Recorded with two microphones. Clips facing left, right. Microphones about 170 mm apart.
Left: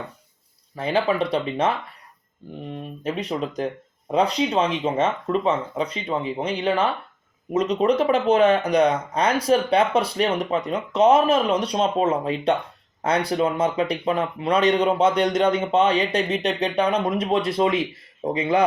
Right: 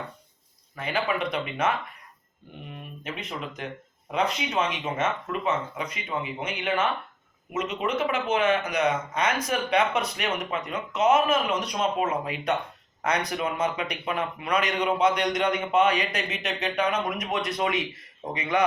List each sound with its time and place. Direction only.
0.8 s speech: 35° left (ahead or behind)